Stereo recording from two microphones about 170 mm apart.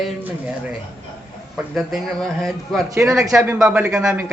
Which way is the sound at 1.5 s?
Centre (ahead or behind).